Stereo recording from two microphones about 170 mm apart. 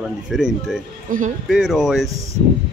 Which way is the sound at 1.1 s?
50° right (ahead or behind).